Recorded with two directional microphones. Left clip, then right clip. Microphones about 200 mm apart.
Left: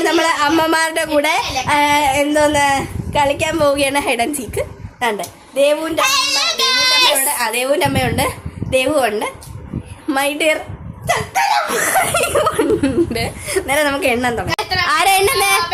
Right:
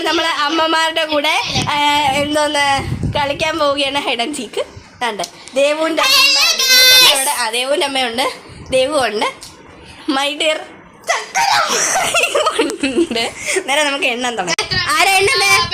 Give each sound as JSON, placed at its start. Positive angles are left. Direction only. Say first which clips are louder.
{"t": 0.0, "sound": "speech", "louder": "left 1 dB", "side_deg": 5}
{"t": 4.9, "sound": "speech", "louder": "left 1 dB", "side_deg": 0}
{"t": 5.5, "sound": "child singing", "louder": "even", "side_deg": -25}
{"t": 6.0, "sound": "child singing", "louder": "right 7 dB", "side_deg": 0}
{"t": 7.3, "sound": "a woman's voice", "louder": "even", "side_deg": -10}